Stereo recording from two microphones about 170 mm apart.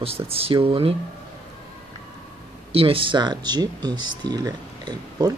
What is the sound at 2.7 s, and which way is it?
Speech, 35° right (ahead or behind).